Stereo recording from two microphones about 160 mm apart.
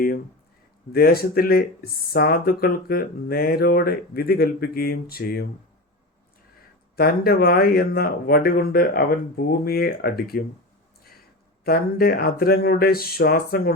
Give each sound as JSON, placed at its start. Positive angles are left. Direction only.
{"t": 0.9, "sound": "speech", "side_deg": 70}
{"t": 6.9, "sound": "speech", "side_deg": 70}
{"t": 11.6, "sound": "speech", "side_deg": 70}